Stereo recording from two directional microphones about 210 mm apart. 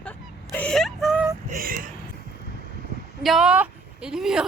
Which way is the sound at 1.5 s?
45° right (ahead or behind).